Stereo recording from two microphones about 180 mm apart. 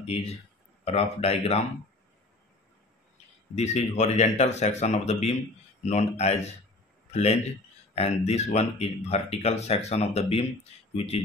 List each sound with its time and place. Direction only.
0.0 s speech: 35° left (ahead or behind)
3.5 s speech: 40° left (ahead or behind)
7.9 s speech: 35° left (ahead or behind)